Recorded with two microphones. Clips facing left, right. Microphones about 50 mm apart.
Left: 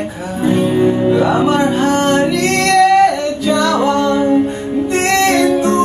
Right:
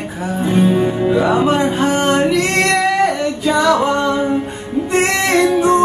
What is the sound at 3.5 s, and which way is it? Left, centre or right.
Singing, centre.